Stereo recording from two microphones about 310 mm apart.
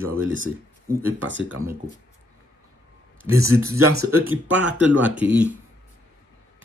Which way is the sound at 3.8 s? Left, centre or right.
Right.